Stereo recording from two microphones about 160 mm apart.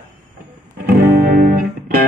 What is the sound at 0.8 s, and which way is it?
Music, 70° right (ahead or behind).